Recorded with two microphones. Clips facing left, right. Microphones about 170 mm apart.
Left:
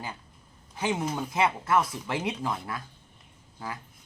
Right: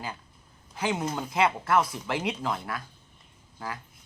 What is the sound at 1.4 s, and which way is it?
Speech, 20° left (ahead or behind).